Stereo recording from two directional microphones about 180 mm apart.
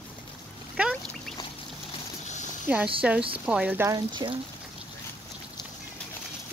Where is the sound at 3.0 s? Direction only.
5° right (ahead or behind).